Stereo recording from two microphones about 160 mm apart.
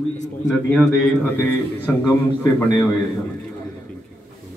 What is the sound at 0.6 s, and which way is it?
A man's voice, 10° left (ahead or behind).